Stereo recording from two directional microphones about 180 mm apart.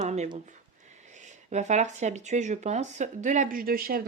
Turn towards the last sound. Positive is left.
turn(degrees=-55)  # may be behind; listen again after turning